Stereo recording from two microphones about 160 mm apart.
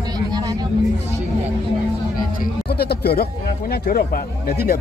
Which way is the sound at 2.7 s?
85° left.